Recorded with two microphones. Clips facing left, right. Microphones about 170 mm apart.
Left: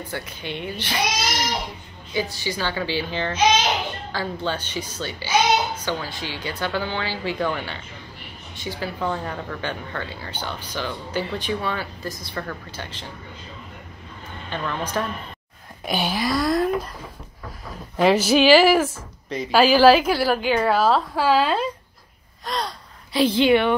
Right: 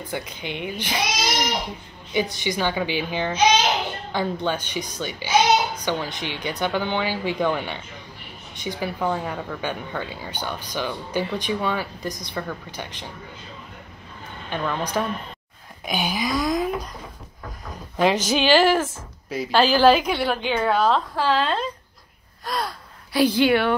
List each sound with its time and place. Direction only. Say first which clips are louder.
0.1 s speech: right 3 dB; 15° right (ahead or behind)
14.5 s speech: right 1 dB; 10° right (ahead or behind)
15.8 s a woman's voice: left 1 dB; centre (ahead or behind)
17.9 s a woman's voice: left 3 dB; 5° left (ahead or behind)
19.2 s speech: even; 5° right (ahead or behind)
19.5 s a woman's voice: left 2 dB; 5° left (ahead or behind)
23.1 s a woman's voice: left 1 dB; 25° left (ahead or behind)